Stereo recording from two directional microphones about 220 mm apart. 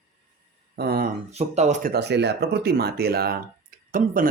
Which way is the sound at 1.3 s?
30° right (ahead or behind).